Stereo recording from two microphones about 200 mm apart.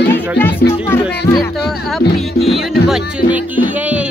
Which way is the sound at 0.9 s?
10° left (ahead or behind).